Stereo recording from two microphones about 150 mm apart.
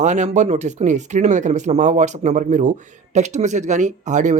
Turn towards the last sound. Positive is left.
turn(degrees=-55)  # may be behind; listen again after turning